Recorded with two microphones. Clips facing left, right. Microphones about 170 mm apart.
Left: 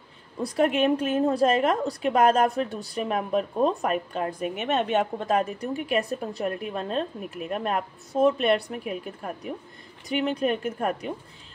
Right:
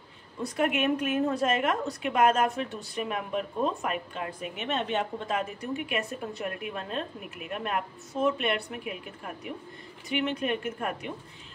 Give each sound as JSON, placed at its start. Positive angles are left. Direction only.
{"t": 0.4, "sound": "a woman's voice", "side_deg": 35}